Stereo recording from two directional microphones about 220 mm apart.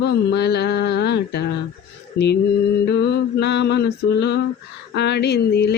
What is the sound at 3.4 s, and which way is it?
Mantra, 50° left (ahead or behind).